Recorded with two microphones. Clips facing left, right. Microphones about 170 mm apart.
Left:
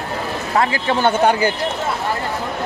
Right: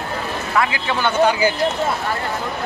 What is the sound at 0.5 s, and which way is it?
Speech, 35° left (ahead or behind).